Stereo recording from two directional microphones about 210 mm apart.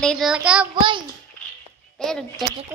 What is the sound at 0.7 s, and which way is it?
Speech, 25° right (ahead or behind).